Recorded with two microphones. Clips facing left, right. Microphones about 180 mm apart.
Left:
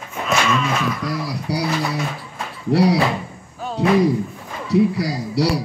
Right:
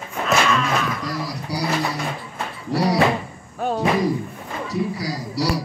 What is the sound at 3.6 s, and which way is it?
Slam, 60° right (ahead or behind).